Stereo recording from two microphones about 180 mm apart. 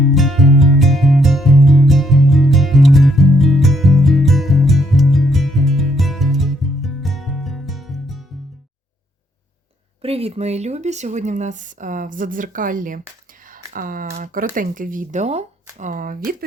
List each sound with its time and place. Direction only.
0.0 s music: centre (ahead or behind)
10.0 s speech: 35° right (ahead or behind)
15.8 s speech: 50° right (ahead or behind)